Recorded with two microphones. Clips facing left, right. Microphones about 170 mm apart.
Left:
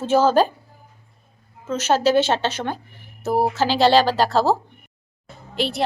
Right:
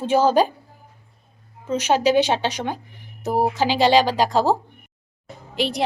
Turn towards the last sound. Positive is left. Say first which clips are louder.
# even
turn(degrees=-15)  # may be behind; listen again after turning